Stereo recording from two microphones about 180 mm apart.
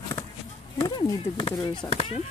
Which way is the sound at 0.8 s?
25° left (ahead or behind).